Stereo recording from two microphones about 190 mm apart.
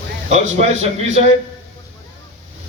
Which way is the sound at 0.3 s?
35° right (ahead or behind).